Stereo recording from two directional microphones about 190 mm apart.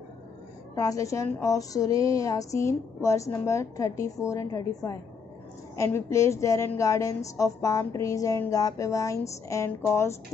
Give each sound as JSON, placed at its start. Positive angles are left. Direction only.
{"t": 0.7, "sound": "a woman's voice", "side_deg": 15}